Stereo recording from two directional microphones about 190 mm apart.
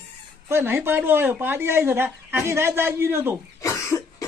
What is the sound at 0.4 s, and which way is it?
Speech, 10° right (ahead or behind).